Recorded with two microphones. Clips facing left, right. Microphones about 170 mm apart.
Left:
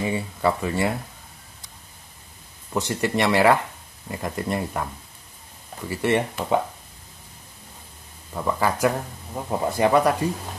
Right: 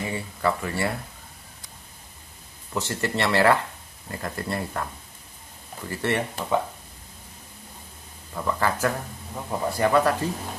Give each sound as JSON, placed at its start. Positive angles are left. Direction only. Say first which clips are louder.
{"t": 0.0, "sound": "speech", "louder": "left 3 dB", "side_deg": 20}
{"t": 2.7, "sound": "speech", "louder": "left 3 dB", "side_deg": 15}
{"t": 5.9, "sound": "speech", "louder": "left 4 dB", "side_deg": 15}
{"t": 8.4, "sound": "speech", "louder": "left 2 dB", "side_deg": 10}